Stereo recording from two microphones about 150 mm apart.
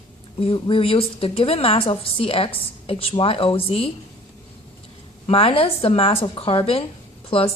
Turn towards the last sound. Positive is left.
turn(degrees=40)  # may be behind; listen again after turning